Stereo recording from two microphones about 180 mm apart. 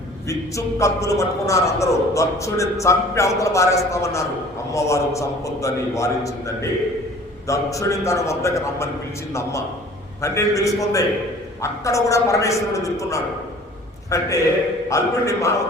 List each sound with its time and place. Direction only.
0.3 s a man's voice: 15° left (ahead or behind)